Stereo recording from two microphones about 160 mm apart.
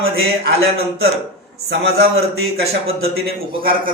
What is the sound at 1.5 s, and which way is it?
A man's voice, 90° right.